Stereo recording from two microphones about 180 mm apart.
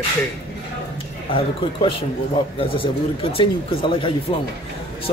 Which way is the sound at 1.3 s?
30° left (ahead or behind).